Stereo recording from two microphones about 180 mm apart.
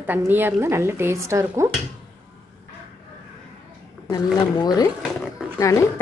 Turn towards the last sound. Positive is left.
turn(degrees=15)  # may be behind; listen again after turning